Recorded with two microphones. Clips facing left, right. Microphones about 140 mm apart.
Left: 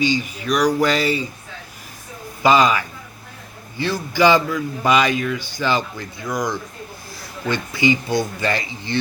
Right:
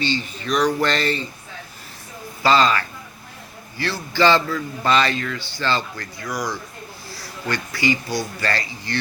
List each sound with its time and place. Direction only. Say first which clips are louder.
0.0 s a man's voice: left 4 dB; 10° left (ahead or behind)
2.4 s a man's voice: left 2 dB; 15° left (ahead or behind)